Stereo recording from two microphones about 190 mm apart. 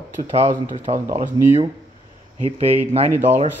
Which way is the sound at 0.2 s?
35° right (ahead or behind).